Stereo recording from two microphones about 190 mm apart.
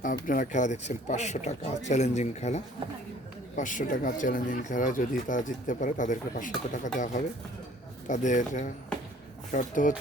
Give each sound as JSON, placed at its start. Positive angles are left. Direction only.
{"t": 0.0, "sound": "speech", "side_deg": 45}